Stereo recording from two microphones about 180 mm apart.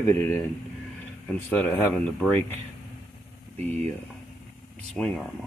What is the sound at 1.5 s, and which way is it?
Speech, 5° left (ahead or behind).